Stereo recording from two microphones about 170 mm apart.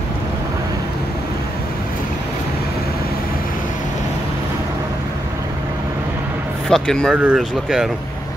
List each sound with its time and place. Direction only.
6.7 s speech: centre (ahead or behind)